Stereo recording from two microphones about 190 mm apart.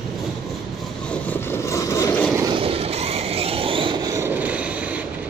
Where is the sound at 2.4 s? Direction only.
25° right (ahead or behind).